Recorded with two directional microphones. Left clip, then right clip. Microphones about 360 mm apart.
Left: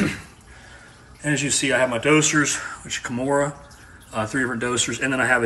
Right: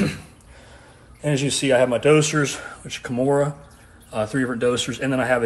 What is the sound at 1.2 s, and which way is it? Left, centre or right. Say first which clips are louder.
Speech: even; centre.